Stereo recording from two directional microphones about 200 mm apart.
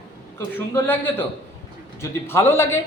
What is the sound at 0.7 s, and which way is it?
Speech, 10° left (ahead or behind).